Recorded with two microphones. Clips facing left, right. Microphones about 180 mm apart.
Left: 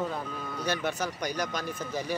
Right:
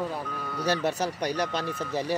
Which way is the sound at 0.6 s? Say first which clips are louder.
Right 4 dB; 35° right (ahead or behind).